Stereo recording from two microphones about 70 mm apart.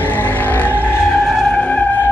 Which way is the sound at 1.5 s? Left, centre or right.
Centre.